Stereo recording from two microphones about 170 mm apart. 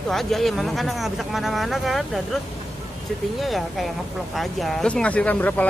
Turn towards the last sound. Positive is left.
turn(degrees=10)  # may be behind; listen again after turning